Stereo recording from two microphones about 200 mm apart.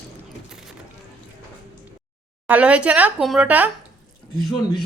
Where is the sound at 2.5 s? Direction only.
5° right (ahead or behind).